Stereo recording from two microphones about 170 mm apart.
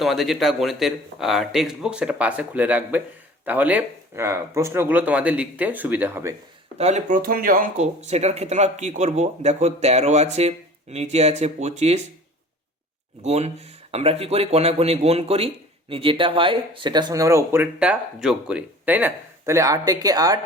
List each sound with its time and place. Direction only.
0.0 s speech: centre (ahead or behind)
6.7 s speech: 40° right (ahead or behind)
13.2 s speech: 40° right (ahead or behind); by 20.4 s 20° right (ahead or behind)